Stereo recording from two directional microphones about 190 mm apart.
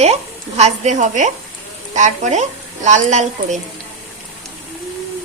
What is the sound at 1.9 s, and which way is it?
Speech, 40° right (ahead or behind).